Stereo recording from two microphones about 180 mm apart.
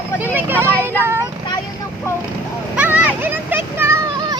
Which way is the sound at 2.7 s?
10° right (ahead or behind).